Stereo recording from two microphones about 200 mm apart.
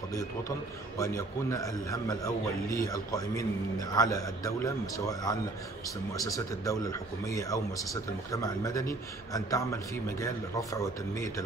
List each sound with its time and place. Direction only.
0.9 s a man's voice: 15° left (ahead or behind)